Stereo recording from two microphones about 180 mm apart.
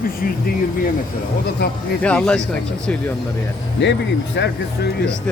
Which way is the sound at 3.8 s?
85° left.